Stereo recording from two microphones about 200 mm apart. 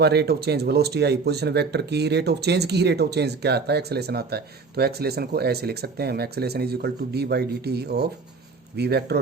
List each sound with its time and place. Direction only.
0.0 s speech: 55° right (ahead or behind)